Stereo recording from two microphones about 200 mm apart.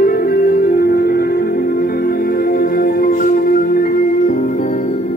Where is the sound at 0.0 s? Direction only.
45° left (ahead or behind).